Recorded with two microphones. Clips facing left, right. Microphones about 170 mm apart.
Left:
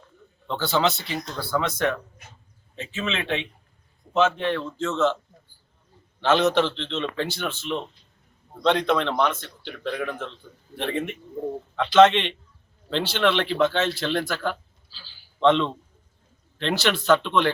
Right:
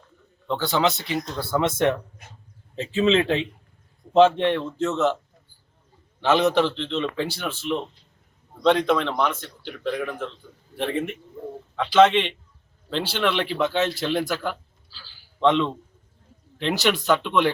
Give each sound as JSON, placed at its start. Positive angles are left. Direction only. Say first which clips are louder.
{"t": 0.4, "sound": "a man's voice", "louder": "right 1 dB", "side_deg": -15}
{"t": 2.7, "sound": "a man's voice", "louder": "right 10 dB", "side_deg": -35}
{"t": 6.1, "sound": "a man's voice", "louder": "right 1 dB", "side_deg": -5}
{"t": 14.8, "sound": "a sound", "louder": "right 1 dB", "side_deg": 15}
{"t": 15.4, "sound": "a man's voice", "louder": "even", "side_deg": -10}